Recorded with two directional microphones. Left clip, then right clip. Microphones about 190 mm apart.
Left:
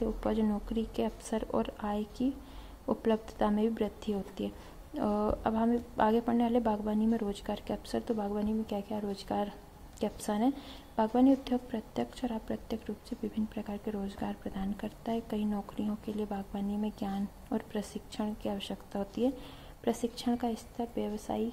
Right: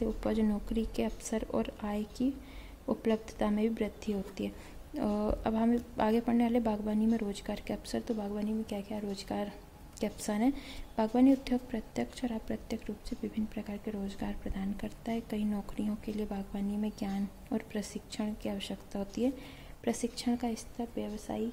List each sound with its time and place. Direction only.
0.0 s a woman's voice: 15° right (ahead or behind)